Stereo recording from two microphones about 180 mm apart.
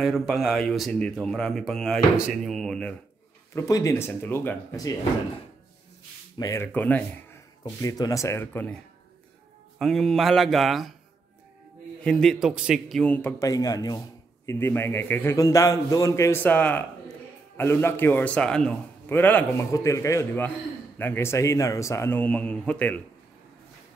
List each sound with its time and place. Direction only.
0.0 s speech: centre (ahead or behind)
3.5 s a man's voice: 15° left (ahead or behind)
6.4 s a man's voice: 15° left (ahead or behind)
7.6 s a man's voice: 20° left (ahead or behind)
9.8 s speech: centre (ahead or behind)
12.0 s a man's voice: 5° left (ahead or behind)